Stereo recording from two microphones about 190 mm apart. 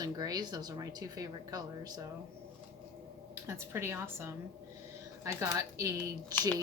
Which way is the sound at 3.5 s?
15° right (ahead or behind).